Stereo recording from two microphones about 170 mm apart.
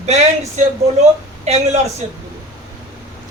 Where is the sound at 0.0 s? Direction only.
40° right (ahead or behind).